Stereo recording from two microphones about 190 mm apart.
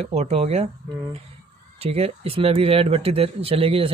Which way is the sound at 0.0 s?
35° right (ahead or behind).